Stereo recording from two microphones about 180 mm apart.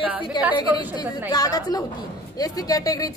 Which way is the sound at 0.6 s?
25° left (ahead or behind).